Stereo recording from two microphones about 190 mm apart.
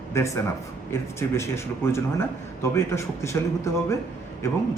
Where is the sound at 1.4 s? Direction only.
15° left (ahead or behind).